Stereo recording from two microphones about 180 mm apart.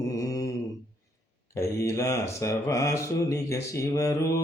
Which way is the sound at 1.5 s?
15° left (ahead or behind).